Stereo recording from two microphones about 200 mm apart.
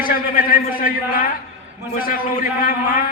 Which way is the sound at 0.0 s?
45° left (ahead or behind).